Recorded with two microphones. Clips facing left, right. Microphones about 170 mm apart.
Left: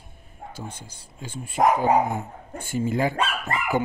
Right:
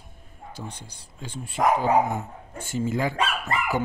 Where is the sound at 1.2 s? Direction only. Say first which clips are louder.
Left 2 dB; 50° left (ahead or behind).